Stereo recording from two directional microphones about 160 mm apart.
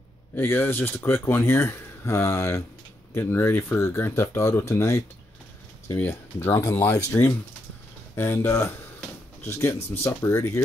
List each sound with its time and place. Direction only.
0.4 s speech: 15° left (ahead or behind)